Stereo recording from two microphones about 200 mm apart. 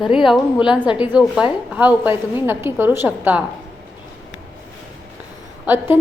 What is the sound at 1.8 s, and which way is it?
A woman's voice, 10° right (ahead or behind).